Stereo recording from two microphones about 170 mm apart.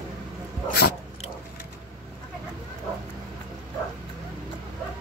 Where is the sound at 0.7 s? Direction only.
65° left (ahead or behind).